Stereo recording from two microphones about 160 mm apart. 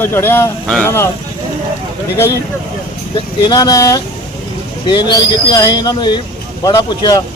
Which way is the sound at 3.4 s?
25° left (ahead or behind).